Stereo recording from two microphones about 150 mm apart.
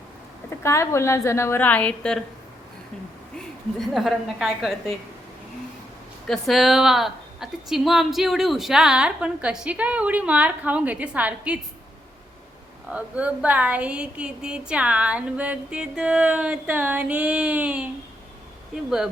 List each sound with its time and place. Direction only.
0.6 s a woman's voice: 20° left (ahead or behind)
3.3 s a woman's voice: centre (ahead or behind)
6.2 s a woman's voice: centre (ahead or behind)
12.9 s a woman's voice: 10° right (ahead or behind)